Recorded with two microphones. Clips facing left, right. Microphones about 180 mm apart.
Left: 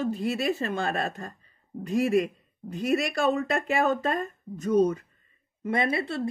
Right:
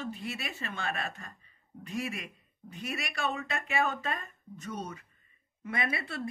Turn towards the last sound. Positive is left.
turn(degrees=30)  # may be behind; listen again after turning